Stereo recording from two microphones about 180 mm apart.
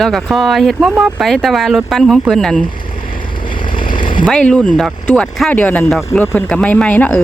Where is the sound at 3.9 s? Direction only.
25° left (ahead or behind).